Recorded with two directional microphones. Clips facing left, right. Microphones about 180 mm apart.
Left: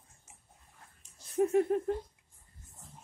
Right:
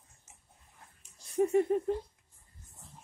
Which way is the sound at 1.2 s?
Centre (ahead or behind).